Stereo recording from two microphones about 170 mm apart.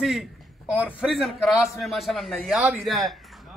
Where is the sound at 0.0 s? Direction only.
Centre (ahead or behind).